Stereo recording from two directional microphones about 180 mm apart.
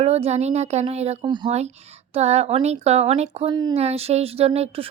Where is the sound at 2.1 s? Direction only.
35° right (ahead or behind).